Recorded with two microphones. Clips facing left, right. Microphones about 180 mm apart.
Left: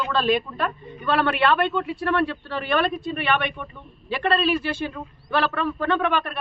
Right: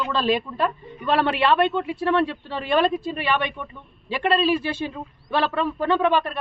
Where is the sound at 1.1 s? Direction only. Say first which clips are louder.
Right 1 dB; 25° right (ahead or behind).